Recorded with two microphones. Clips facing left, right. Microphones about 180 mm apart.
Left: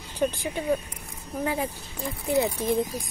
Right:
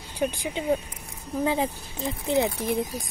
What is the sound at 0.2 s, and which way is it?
Speech, 15° right (ahead or behind).